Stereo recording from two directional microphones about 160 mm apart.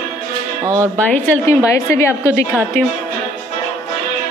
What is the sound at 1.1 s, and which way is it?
Speech, 10° left (ahead or behind).